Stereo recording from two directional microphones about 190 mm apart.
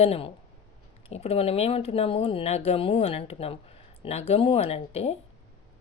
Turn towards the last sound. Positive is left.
turn(degrees=35)  # may be behind; listen again after turning